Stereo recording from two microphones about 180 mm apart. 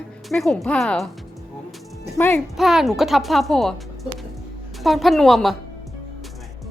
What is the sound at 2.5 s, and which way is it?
Speech, centre (ahead or behind).